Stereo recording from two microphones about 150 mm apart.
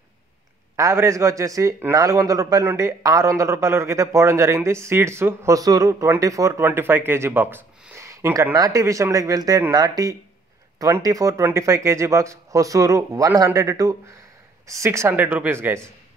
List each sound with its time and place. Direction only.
0.7 s a man's voice: 20° right (ahead or behind)